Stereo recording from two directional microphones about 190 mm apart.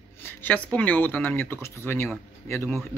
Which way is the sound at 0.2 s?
10° left (ahead or behind).